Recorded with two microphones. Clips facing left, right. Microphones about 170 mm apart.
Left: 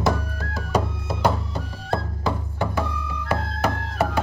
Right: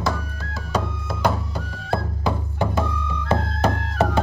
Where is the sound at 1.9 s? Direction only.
15° right (ahead or behind).